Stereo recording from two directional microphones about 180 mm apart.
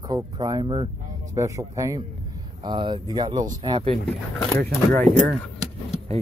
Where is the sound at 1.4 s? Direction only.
15° right (ahead or behind).